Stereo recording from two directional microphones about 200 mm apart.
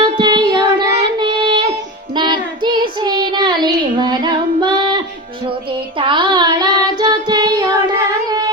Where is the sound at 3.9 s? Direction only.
25° right (ahead or behind).